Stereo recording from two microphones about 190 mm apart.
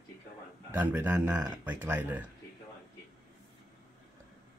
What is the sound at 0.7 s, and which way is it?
Speech, 10° right (ahead or behind).